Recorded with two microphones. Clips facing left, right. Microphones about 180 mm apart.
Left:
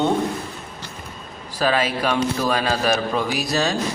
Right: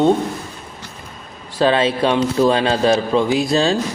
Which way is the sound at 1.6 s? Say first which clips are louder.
Right 5 dB; 25° right (ahead or behind).